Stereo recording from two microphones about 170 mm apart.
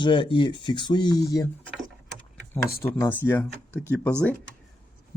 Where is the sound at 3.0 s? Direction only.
10° left (ahead or behind).